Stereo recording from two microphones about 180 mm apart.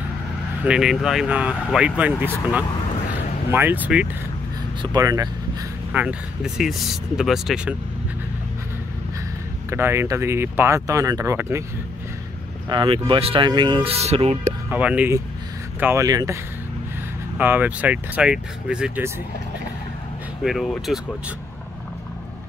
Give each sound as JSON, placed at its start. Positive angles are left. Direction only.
{"t": 0.7, "sound": "speech", "side_deg": -5}
{"t": 4.9, "sound": "speech", "side_deg": -20}
{"t": 5.9, "sound": "speech", "side_deg": -5}
{"t": 9.7, "sound": "speech", "side_deg": -15}
{"t": 12.6, "sound": "speech", "side_deg": -25}
{"t": 14.7, "sound": "speech", "side_deg": -10}
{"t": 17.4, "sound": "speech", "side_deg": -10}
{"t": 20.4, "sound": "speech", "side_deg": 0}